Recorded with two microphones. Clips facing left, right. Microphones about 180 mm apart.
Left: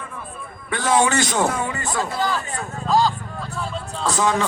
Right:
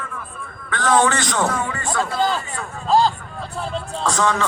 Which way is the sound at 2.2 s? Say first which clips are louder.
Right 2 dB; 25° right (ahead or behind).